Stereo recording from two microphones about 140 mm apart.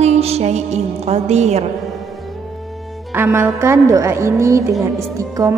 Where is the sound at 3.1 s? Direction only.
15° right (ahead or behind).